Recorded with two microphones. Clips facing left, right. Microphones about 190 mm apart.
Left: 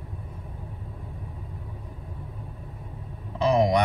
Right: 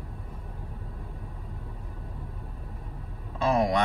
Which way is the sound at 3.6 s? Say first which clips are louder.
Left 3 dB; 20° left (ahead or behind).